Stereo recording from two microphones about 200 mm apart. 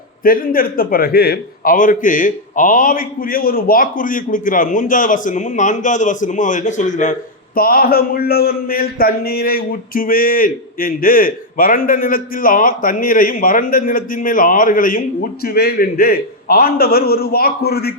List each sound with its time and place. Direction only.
0.3 s a man's voice: 45° left (ahead or behind)